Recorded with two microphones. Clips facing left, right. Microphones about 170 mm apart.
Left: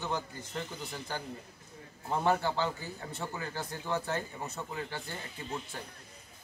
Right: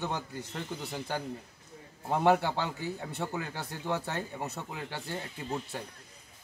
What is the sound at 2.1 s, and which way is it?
A man's voice, 70° right (ahead or behind).